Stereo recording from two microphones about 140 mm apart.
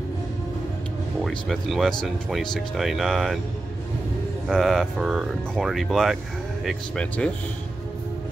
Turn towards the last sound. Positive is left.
turn(degrees=5)  # may be behind; listen again after turning